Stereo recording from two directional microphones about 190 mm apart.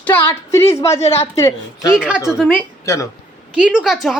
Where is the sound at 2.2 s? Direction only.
5° right (ahead or behind).